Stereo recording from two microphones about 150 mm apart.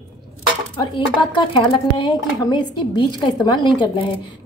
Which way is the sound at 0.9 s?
30° left (ahead or behind).